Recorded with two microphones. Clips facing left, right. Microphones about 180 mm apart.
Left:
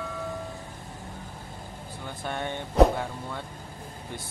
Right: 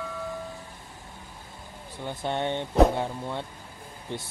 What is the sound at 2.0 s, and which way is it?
Speech, 20° right (ahead or behind).